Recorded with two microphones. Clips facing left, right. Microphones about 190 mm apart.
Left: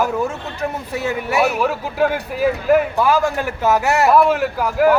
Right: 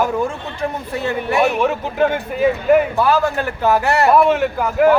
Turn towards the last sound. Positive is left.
turn(degrees=0)  # may be behind; listen again after turning